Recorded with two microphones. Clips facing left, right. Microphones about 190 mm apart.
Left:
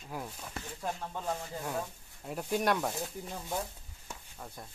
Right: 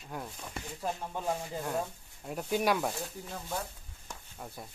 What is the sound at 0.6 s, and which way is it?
Speech, 10° right (ahead or behind).